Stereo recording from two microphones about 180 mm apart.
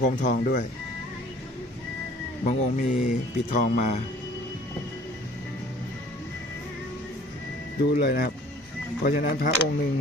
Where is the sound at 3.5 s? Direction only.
40° left (ahead or behind).